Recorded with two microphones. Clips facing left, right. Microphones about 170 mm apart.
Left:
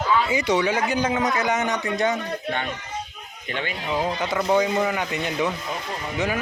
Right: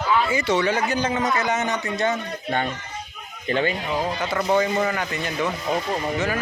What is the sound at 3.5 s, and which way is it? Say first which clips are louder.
Speech: right 7 dB; 35° right (ahead or behind).